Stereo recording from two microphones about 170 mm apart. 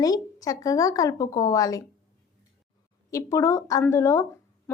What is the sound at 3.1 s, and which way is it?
Speech, 15° left (ahead or behind).